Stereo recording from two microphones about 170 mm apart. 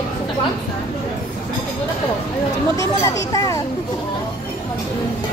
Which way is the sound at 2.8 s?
20° left (ahead or behind).